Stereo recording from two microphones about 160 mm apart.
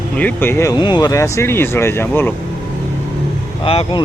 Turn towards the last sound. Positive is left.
turn(degrees=35)  # may be behind; listen again after turning